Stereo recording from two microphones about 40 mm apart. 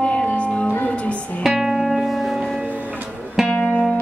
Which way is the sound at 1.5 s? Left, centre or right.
Centre.